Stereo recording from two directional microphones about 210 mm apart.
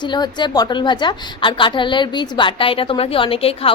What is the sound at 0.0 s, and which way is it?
A woman's voice, 20° left (ahead or behind).